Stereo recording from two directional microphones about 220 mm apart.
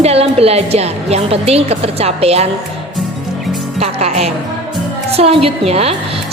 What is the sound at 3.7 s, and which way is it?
Speech, 30° right (ahead or behind).